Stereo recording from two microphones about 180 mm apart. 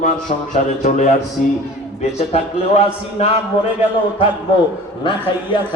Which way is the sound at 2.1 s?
35° left (ahead or behind).